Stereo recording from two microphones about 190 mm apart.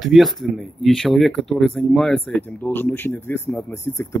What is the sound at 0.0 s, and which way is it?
Speech, centre (ahead or behind).